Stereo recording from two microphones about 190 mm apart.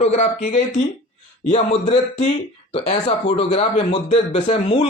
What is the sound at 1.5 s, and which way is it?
Speech, 30° left (ahead or behind).